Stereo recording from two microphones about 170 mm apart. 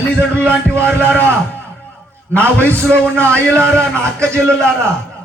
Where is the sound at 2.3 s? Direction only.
10° left (ahead or behind).